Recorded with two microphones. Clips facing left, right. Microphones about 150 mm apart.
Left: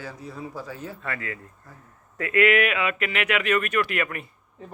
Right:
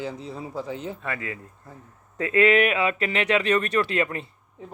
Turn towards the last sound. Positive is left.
turn(degrees=-25)  # may be behind; listen again after turning